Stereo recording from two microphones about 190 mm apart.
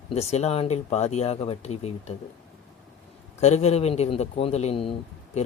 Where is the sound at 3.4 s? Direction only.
35° left (ahead or behind).